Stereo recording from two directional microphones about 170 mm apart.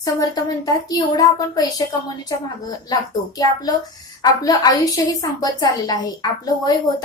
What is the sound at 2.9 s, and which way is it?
A woman's voice, 20° left (ahead or behind).